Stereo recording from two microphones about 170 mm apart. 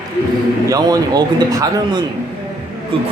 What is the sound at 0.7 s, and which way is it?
Speech, 20° right (ahead or behind).